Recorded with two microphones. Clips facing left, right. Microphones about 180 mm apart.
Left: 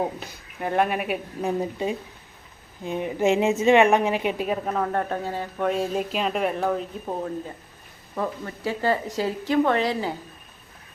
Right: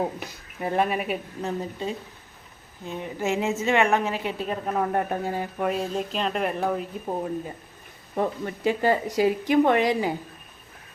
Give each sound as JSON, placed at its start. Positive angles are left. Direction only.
{"t": 0.6, "sound": "a woman's voice", "side_deg": 0}
{"t": 4.6, "sound": "speech", "side_deg": -10}
{"t": 8.1, "sound": "speech", "side_deg": -20}